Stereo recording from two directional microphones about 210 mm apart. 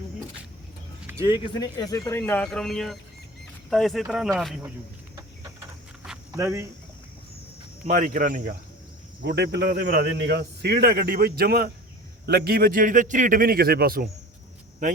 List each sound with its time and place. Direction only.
1.2 s speech: 20° left (ahead or behind); by 4.7 s centre (ahead or behind)
6.3 s speech: 15° right (ahead or behind)
7.9 s speech: 40° right (ahead or behind)
9.2 s speech: 55° right (ahead or behind)